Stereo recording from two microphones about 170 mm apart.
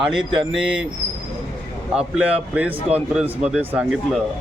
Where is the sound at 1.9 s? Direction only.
5° right (ahead or behind).